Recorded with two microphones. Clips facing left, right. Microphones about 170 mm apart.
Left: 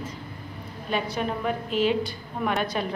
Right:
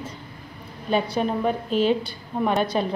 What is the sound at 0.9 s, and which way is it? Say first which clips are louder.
A woman's voice: right 5 dB; 35° right (ahead or behind).